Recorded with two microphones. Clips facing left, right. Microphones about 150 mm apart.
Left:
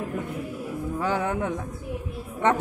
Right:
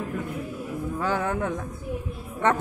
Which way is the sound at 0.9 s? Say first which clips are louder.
Even; 20° left (ahead or behind).